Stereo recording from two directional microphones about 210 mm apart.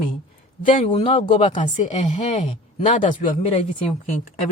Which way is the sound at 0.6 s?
40° left (ahead or behind).